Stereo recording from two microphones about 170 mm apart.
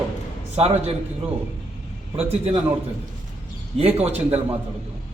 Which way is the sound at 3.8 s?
40° right (ahead or behind).